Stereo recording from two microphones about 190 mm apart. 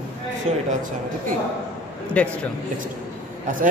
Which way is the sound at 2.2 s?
5° left (ahead or behind).